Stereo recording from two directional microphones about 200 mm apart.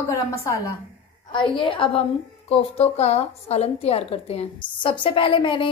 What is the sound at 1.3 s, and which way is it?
A woman's voice, 25° left (ahead or behind).